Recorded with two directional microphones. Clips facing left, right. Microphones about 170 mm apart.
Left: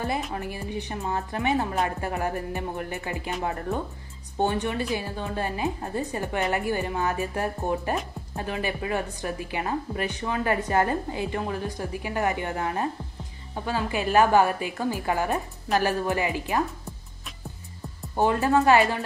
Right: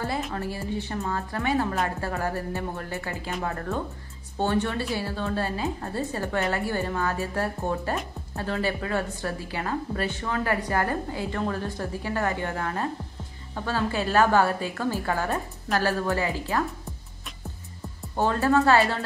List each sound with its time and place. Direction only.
0.3 s a woman's voice: 15° left (ahead or behind)
18.1 s a woman's voice: 15° left (ahead or behind)